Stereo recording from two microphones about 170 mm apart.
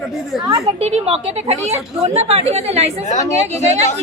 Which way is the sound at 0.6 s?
40° right (ahead or behind).